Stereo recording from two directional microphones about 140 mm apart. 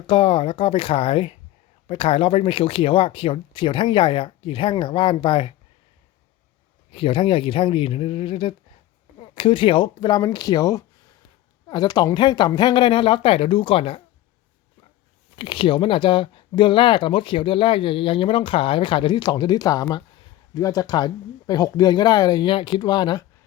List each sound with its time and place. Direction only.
0.1 s speech: 40° left (ahead or behind)
6.9 s speech: 40° left (ahead or behind)
15.4 s speech: 35° left (ahead or behind)